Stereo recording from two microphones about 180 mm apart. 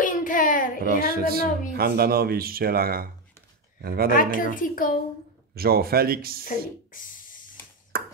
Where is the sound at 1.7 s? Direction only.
60° right (ahead or behind).